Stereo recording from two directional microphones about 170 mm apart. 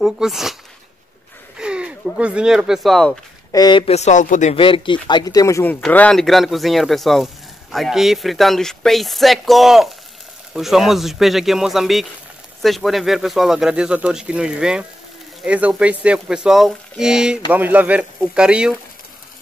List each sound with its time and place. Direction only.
0.0 s speech: 5° right (ahead or behind)
1.6 s a sound: 5° right (ahead or behind)
2.1 s speech: 5° right (ahead or behind)
3.5 s speech: 25° left (ahead or behind)
3.8 s speech: 40° left (ahead or behind)
4.6 s speech: 30° left (ahead or behind); by 18.8 s 5° right (ahead or behind)